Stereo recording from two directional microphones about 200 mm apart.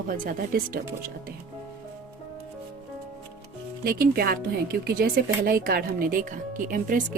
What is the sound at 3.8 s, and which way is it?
Speech, 50° right (ahead or behind).